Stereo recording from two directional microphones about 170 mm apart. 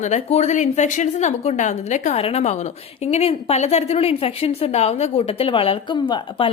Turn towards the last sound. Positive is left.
turn(degrees=30)  # may be behind; listen again after turning